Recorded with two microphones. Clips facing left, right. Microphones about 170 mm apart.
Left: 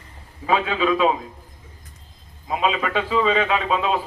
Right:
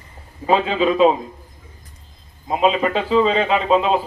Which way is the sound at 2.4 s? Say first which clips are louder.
Right 5 dB; 30° right (ahead or behind).